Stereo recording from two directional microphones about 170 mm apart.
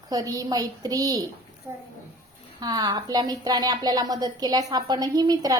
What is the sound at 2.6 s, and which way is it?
A woman's voice, 25° right (ahead or behind).